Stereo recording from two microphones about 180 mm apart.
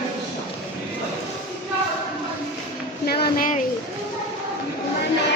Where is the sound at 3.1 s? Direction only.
60° left (ahead or behind).